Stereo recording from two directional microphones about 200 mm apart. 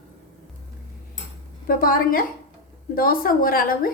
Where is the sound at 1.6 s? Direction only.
45° left (ahead or behind).